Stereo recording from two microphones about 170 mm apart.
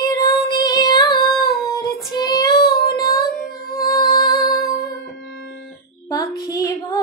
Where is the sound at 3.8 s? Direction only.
20° left (ahead or behind).